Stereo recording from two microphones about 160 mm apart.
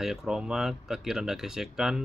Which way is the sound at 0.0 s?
5° right (ahead or behind).